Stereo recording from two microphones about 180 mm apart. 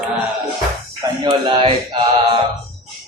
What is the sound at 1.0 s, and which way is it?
Music, 25° right (ahead or behind).